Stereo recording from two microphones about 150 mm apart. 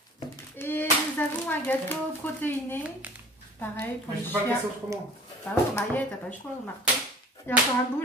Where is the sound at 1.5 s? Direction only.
10° left (ahead or behind).